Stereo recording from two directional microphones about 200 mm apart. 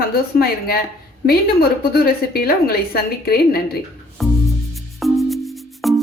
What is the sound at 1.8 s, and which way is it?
A woman's voice, 50° left (ahead or behind).